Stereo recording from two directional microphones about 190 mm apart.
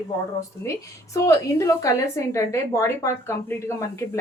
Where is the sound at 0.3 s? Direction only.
15° left (ahead or behind).